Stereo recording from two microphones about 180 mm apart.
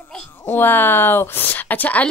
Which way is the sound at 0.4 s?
10° left (ahead or behind).